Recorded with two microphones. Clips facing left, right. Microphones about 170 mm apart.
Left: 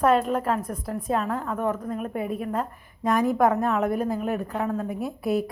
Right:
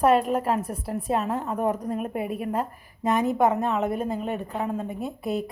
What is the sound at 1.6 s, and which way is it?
A woman's voice, 15° right (ahead or behind).